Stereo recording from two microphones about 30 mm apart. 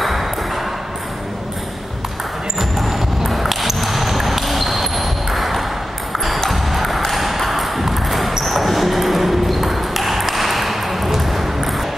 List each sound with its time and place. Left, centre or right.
0.0 s ping: centre
2.8 s a sound: centre
6.1 s ping: centre